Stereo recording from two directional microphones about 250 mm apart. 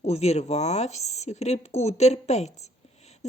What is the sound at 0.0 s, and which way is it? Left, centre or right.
A woman's voice, left.